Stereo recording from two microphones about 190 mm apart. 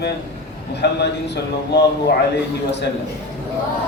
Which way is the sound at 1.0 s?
65° left (ahead or behind).